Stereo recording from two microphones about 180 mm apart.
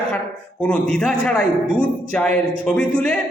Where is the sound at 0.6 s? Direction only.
5° left (ahead or behind).